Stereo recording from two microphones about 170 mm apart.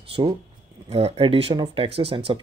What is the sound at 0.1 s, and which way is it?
Speech, 30° right (ahead or behind).